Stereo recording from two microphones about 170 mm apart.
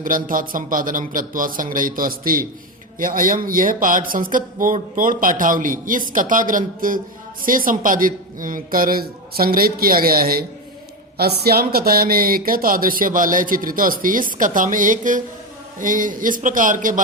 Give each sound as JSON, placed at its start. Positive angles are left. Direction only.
{"t": 0.0, "sound": "speech", "side_deg": -55}